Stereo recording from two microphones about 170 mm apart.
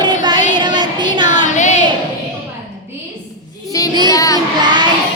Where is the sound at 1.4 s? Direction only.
45° left (ahead or behind).